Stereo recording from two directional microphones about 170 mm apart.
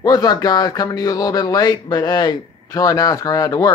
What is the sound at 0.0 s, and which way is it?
Speech, 25° left (ahead or behind).